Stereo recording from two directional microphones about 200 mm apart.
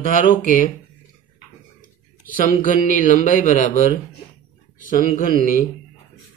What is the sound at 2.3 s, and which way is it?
A man's voice, 40° left (ahead or behind).